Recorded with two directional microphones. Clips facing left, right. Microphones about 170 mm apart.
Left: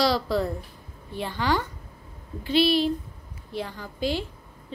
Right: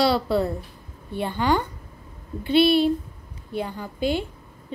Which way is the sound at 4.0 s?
55° right (ahead or behind).